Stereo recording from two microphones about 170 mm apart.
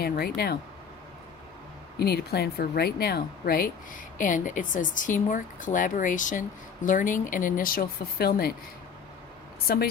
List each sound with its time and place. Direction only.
0.0 s speech: 65° left (ahead or behind)
2.0 s speech: 70° left (ahead or behind)
9.6 s a woman's voice: 65° left (ahead or behind)